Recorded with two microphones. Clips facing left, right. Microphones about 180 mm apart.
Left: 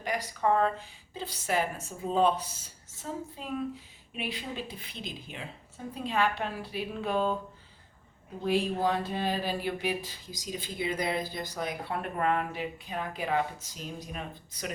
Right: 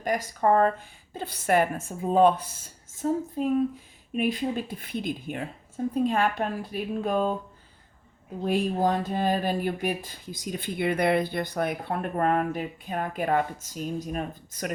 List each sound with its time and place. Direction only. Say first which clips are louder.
0.0 s speech: right 5 dB; 45° right (ahead or behind)
8.4 s speech: right 3 dB; 45° right (ahead or behind)